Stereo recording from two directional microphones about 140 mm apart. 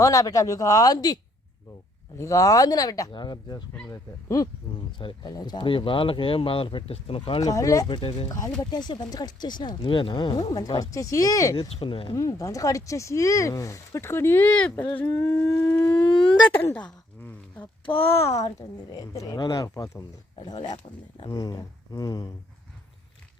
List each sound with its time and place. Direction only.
0.0 s speech: 25° left (ahead or behind)
4.9 s speech: 35° left (ahead or behind)
7.4 s speech: 25° left (ahead or behind)
7.9 s speech: 40° left (ahead or behind)
11.6 s speech: 35° left (ahead or behind)
12.1 s speech: 25° left (ahead or behind)
16.5 s a sound: 15° left (ahead or behind)
18.2 s speech: 20° left (ahead or behind)